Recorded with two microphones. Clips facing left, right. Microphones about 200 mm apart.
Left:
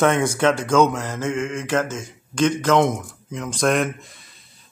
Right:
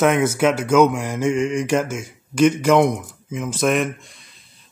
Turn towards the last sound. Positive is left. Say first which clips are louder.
# right 1 dB
turn(degrees=0)  # may be behind; listen again after turning